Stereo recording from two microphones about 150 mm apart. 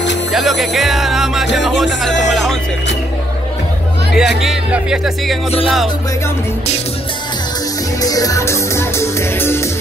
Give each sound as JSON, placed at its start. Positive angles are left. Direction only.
{"t": 0.3, "sound": "speech", "side_deg": 0}
{"t": 4.2, "sound": "speech", "side_deg": -5}
{"t": 8.0, "sound": "music", "side_deg": 25}